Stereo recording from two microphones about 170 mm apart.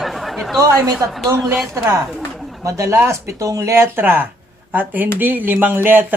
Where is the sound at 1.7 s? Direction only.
15° right (ahead or behind).